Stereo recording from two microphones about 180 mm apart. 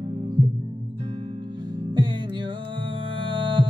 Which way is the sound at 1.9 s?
25° right (ahead or behind).